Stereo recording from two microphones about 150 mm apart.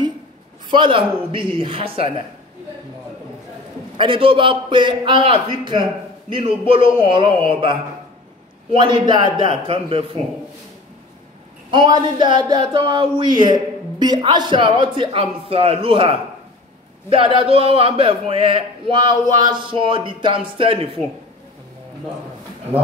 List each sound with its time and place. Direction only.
0.7 s speech: 35° right (ahead or behind)
3.9 s speech: 35° right (ahead or behind)
11.7 s speech: 30° right (ahead or behind)